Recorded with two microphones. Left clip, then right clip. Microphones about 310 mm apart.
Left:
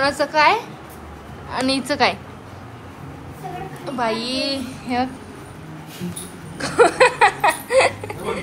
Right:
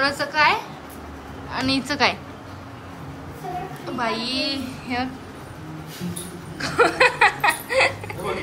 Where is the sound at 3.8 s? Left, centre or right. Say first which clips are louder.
Left 3 dB; centre.